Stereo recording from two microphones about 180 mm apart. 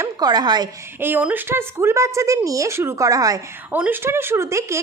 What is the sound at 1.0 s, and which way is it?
A woman's voice, 10° right (ahead or behind).